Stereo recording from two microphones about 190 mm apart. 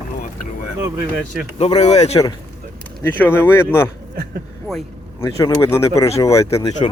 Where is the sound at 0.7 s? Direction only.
10° right (ahead or behind).